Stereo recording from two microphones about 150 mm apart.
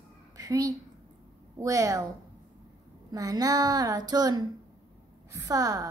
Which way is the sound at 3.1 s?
25° right (ahead or behind).